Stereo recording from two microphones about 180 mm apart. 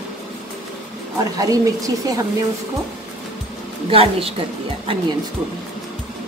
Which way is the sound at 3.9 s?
30° right (ahead or behind).